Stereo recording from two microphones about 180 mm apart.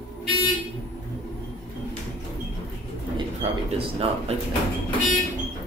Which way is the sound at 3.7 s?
30° right (ahead or behind).